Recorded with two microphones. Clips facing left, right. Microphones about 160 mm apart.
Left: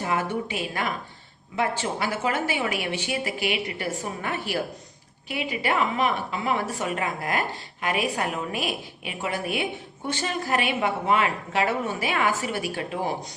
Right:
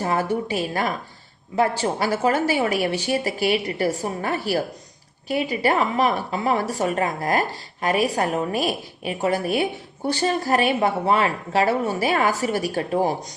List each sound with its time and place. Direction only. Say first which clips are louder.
0.0 s a woman's voice: right 4 dB; 35° right (ahead or behind)